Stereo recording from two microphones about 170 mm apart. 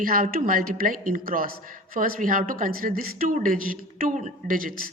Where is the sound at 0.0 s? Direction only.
55° right (ahead or behind).